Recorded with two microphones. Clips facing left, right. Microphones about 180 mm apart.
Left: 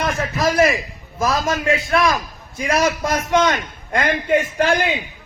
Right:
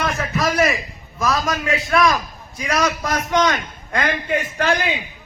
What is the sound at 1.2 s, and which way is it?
A man's voice, 25° left (ahead or behind).